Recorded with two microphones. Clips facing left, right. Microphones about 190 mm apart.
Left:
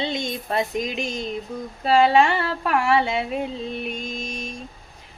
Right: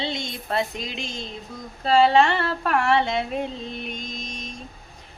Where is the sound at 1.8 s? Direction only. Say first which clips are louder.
Even; 10° left (ahead or behind).